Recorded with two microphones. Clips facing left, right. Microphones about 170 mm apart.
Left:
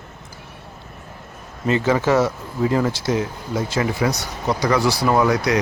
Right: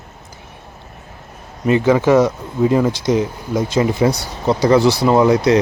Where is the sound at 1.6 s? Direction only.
15° right (ahead or behind).